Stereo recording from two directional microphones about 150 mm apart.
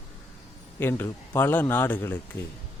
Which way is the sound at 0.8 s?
15° left (ahead or behind).